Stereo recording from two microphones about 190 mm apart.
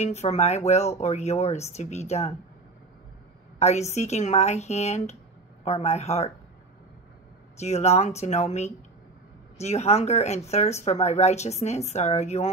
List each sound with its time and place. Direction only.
0.0 s speech: 35° left (ahead or behind)
3.5 s a woman's voice: 35° left (ahead or behind)
7.5 s speech: 35° left (ahead or behind)